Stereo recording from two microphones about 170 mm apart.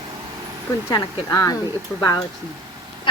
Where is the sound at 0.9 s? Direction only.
20° left (ahead or behind).